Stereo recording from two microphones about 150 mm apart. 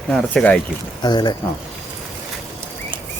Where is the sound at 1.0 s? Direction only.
30° left (ahead or behind).